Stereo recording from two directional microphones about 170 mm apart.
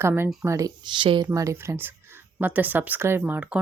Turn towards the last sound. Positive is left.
turn(degrees=-10)  # may be behind; listen again after turning